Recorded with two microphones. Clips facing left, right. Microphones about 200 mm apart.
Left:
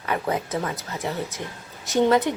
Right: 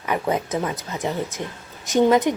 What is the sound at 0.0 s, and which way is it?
A woman's voice, 20° right (ahead or behind).